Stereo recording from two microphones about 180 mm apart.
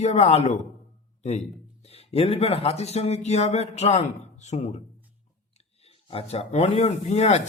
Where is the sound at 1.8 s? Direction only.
35° left (ahead or behind).